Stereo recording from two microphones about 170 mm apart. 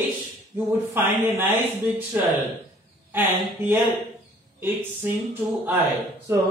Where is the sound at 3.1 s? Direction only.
10° right (ahead or behind).